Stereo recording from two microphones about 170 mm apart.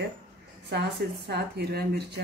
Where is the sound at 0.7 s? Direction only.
75° right (ahead or behind).